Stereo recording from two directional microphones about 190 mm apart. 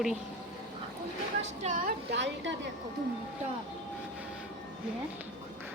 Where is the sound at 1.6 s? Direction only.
45° right (ahead or behind); by 2.5 s 65° right (ahead or behind).